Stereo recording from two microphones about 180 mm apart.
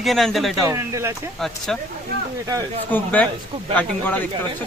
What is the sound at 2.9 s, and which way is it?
Speech, 10° left (ahead or behind).